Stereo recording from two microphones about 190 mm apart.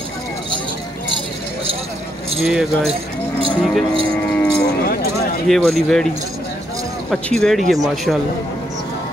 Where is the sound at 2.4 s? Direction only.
5° right (ahead or behind).